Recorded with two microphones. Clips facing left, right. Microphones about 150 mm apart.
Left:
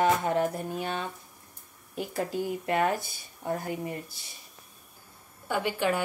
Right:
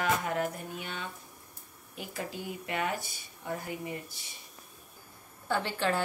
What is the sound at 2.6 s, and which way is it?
Speech, 45° left (ahead or behind).